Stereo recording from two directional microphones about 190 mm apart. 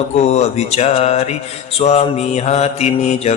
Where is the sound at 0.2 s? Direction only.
35° left (ahead or behind).